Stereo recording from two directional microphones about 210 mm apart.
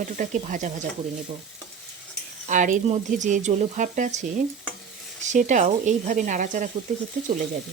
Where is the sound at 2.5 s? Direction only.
35° right (ahead or behind).